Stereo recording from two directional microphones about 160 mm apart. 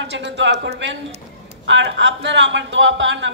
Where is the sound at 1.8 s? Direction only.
90° right.